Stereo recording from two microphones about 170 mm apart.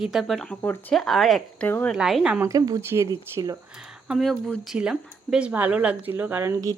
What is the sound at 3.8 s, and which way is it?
Speech, 5° right (ahead or behind).